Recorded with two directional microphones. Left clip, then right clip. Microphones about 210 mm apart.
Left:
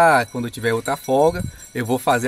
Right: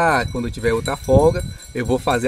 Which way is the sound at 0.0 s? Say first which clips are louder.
Left 3 dB; 5° left (ahead or behind).